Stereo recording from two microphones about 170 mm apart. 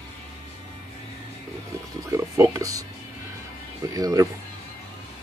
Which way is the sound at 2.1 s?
15° right (ahead or behind).